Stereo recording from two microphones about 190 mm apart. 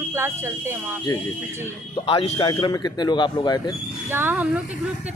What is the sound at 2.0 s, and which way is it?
Speech, 30° left (ahead or behind).